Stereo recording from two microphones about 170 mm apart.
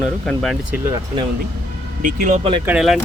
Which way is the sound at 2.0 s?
50° right (ahead or behind).